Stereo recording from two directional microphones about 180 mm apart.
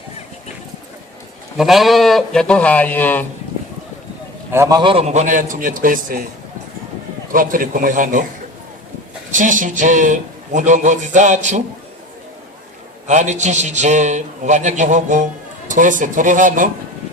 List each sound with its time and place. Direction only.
1.5 s speech: centre (ahead or behind)
4.5 s a man's voice: 15° right (ahead or behind)
4.8 s a man's voice: 30° right (ahead or behind); by 6.2 s 50° right (ahead or behind)
7.3 s a man's voice: 50° right (ahead or behind)
9.3 s a man's voice: 45° right (ahead or behind)
13.1 s a man's voice: 40° right (ahead or behind)